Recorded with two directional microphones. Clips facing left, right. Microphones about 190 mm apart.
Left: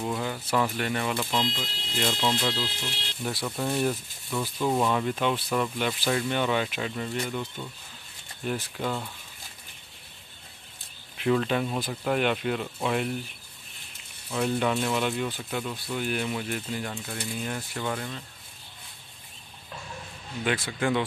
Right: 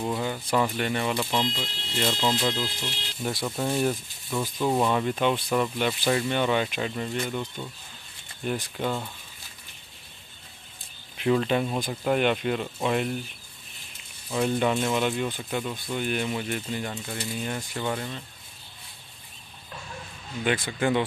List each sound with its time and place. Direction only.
0.0 s speech: centre (ahead or behind)
2.8 s speech: centre (ahead or behind)
8.5 s speech: centre (ahead or behind)
11.1 s speech: centre (ahead or behind)
14.3 s speech: 10° right (ahead or behind)
20.4 s speech: centre (ahead or behind)